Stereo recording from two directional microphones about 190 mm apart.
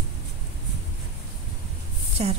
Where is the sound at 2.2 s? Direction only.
35° right (ahead or behind).